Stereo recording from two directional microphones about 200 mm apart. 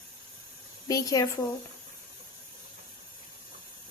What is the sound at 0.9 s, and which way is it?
Speech, 15° left (ahead or behind).